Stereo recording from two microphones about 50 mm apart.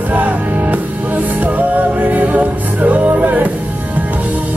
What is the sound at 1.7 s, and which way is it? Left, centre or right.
Music, right.